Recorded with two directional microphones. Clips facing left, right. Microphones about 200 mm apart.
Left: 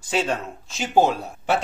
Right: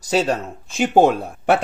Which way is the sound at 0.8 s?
55° right (ahead or behind).